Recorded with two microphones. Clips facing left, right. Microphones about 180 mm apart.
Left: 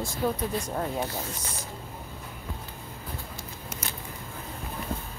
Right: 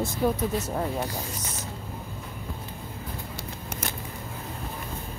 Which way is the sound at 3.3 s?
55° right (ahead or behind).